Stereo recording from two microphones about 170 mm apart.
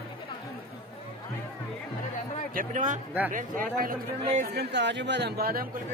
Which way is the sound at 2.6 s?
50° right (ahead or behind).